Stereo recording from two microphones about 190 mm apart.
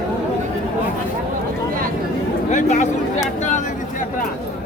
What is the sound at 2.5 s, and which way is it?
Speech, 40° left (ahead or behind).